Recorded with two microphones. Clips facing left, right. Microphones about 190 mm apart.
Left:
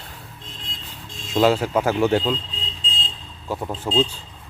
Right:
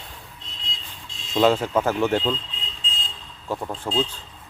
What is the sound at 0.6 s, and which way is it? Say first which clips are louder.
Vehicle: left 3 dB; 55° left (ahead or behind).